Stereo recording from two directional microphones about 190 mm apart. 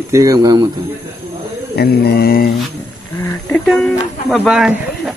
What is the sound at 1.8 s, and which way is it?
Mantra, 55° left (ahead or behind).